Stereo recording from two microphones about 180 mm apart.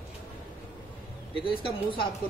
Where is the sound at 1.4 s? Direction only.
30° left (ahead or behind).